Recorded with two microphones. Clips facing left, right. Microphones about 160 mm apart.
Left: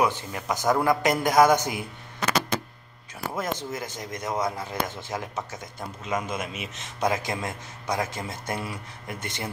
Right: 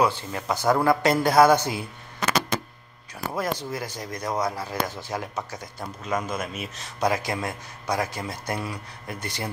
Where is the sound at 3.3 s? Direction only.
20° left (ahead or behind).